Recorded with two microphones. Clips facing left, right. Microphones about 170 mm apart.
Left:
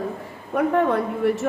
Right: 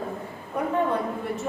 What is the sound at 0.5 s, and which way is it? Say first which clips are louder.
Speech: left 5 dB; 80° left.